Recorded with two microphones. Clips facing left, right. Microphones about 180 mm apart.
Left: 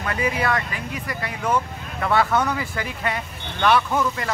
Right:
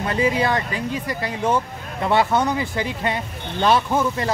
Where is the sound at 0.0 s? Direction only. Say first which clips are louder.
Right 4 dB; 25° right (ahead or behind).